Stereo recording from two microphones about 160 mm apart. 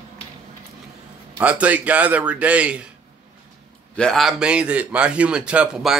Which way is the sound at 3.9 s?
5° left (ahead or behind).